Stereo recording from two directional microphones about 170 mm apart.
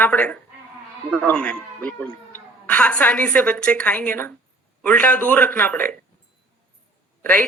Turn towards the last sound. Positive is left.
turn(degrees=10)  # may be behind; listen again after turning